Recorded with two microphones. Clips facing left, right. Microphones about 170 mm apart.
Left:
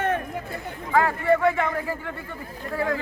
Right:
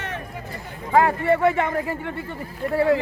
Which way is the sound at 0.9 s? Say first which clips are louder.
Right 2 dB; 25° right (ahead or behind).